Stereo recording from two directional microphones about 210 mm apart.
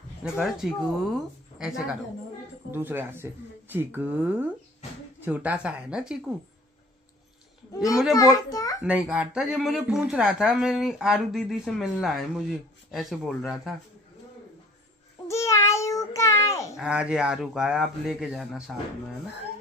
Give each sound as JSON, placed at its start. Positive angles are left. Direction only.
{"t": 0.2, "sound": "speech", "side_deg": 0}
{"t": 8.1, "sound": "a child's voice", "side_deg": 15}
{"t": 8.8, "sound": "speech", "side_deg": -5}
{"t": 15.2, "sound": "child singing", "side_deg": 15}
{"t": 16.7, "sound": "speech", "side_deg": -5}